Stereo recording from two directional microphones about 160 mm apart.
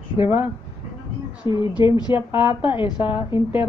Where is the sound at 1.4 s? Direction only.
30° left (ahead or behind).